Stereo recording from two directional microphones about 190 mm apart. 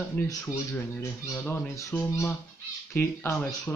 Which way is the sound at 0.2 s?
10° left (ahead or behind).